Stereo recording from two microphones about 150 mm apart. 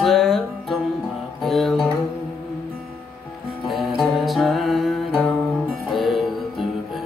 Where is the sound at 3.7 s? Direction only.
Centre (ahead or behind).